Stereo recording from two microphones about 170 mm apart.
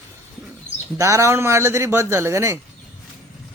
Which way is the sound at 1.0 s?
15° right (ahead or behind).